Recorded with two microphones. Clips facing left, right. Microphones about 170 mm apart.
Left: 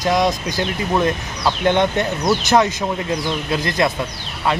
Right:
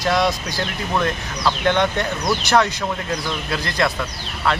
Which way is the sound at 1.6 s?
20° left (ahead or behind).